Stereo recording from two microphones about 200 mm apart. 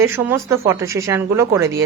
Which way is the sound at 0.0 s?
15° right (ahead or behind).